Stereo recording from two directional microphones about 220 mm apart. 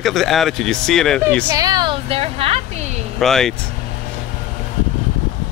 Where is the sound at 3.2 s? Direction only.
Centre (ahead or behind).